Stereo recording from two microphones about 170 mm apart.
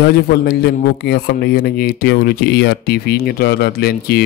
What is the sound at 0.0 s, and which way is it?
Speech, 70° left (ahead or behind).